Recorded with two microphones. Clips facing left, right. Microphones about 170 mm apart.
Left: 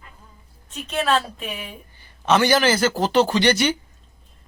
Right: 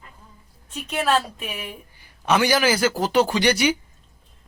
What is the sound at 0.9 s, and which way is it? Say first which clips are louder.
A woman's voice: even; 10° right (ahead or behind).